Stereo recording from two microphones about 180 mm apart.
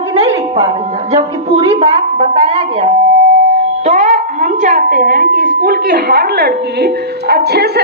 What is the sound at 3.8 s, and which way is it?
A woman's voice, 40° right (ahead or behind).